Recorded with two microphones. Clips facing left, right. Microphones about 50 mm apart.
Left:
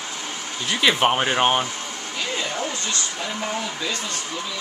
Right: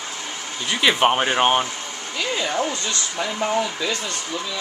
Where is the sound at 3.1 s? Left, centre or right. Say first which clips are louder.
Right 5 dB; centre.